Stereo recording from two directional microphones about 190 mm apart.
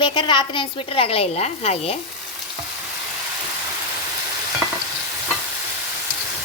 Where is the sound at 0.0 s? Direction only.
25° left (ahead or behind).